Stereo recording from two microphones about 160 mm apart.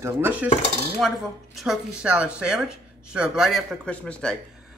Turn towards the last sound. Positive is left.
turn(degrees=5)  # may be behind; listen again after turning